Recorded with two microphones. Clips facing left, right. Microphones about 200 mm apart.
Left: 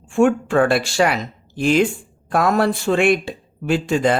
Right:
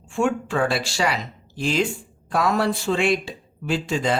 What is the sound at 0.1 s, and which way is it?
Speech, 50° left (ahead or behind).